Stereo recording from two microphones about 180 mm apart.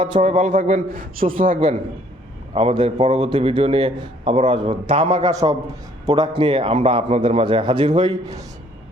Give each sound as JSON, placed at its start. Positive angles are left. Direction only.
{"t": 0.2, "sound": "a man's voice", "side_deg": -40}
{"t": 2.6, "sound": "a man's voice", "side_deg": -30}